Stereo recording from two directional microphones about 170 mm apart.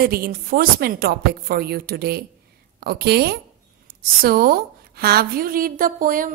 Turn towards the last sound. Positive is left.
turn(degrees=-55)  # may be behind; listen again after turning